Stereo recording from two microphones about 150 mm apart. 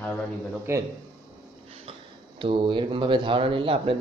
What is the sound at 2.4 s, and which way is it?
Speech, 35° right (ahead or behind).